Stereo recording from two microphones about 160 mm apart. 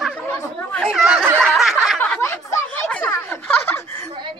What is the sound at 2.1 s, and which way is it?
Snicker, 15° left (ahead or behind).